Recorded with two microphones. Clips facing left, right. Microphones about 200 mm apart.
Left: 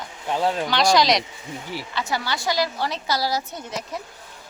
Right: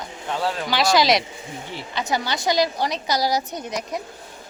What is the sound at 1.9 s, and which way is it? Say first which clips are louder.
Speech: right 3 dB; 20° right (ahead or behind).